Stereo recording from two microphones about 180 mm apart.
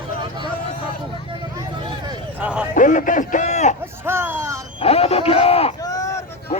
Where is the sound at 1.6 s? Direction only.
25° right (ahead or behind).